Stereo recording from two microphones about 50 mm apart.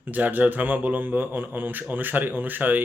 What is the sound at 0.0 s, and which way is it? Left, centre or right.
Speech, right.